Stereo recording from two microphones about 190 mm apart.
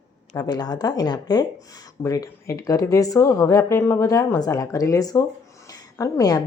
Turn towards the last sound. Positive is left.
turn(degrees=20)  # may be behind; listen again after turning